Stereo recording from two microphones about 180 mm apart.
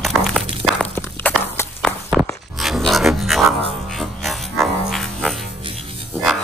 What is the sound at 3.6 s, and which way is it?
Music, 30° right (ahead or behind).